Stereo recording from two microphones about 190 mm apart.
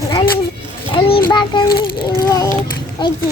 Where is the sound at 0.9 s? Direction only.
25° left (ahead or behind).